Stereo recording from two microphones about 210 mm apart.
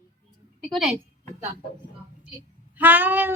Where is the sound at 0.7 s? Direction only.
5° right (ahead or behind).